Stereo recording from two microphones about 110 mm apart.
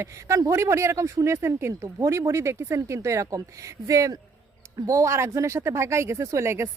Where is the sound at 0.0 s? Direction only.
30° right (ahead or behind).